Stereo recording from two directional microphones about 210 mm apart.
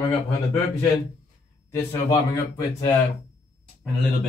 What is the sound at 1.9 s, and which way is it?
A man's voice, 15° left (ahead or behind).